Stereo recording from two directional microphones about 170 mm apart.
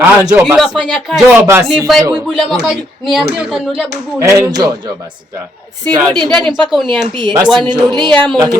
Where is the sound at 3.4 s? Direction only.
5° right (ahead or behind).